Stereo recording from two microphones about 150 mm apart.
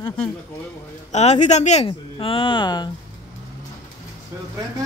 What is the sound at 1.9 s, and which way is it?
A woman's voice, 35° left (ahead or behind).